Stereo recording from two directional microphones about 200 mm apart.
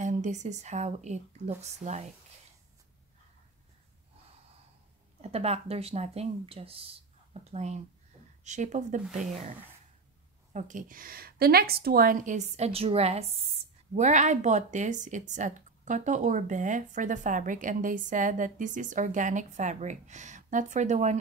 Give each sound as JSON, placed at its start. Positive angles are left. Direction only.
{"t": 0.0, "sound": "speech", "side_deg": -35}
{"t": 5.2, "sound": "speech", "side_deg": -30}
{"t": 10.5, "sound": "a woman's voice", "side_deg": -40}